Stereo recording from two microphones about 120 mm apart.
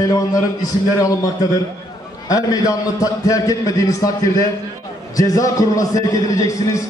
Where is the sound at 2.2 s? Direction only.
30° left (ahead or behind).